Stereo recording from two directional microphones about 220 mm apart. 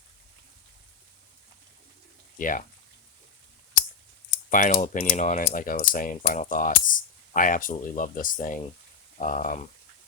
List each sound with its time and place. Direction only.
2.4 s coin: 40° left (ahead or behind)
4.4 s coin: 35° left (ahead or behind)